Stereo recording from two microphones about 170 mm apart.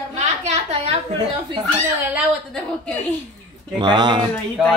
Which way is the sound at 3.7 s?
25° right (ahead or behind).